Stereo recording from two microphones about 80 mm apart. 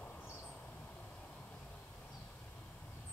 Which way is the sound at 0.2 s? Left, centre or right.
Left.